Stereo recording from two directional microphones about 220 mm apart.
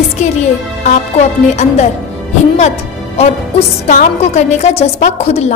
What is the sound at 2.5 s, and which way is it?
A woman's voice, 30° left (ahead or behind).